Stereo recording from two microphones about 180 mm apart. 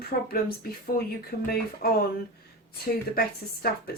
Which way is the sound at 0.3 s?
55° left (ahead or behind).